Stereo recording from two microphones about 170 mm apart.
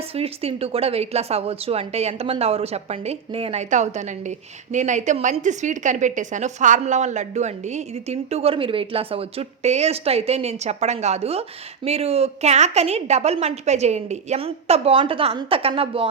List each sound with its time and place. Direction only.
0.1 s a woman's voice: 35° right (ahead or behind)